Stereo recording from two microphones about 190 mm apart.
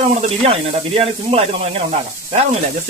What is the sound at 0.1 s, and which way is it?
Speech, 35° right (ahead or behind).